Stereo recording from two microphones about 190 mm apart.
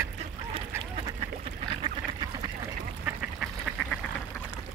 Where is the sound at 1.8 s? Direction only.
25° right (ahead or behind).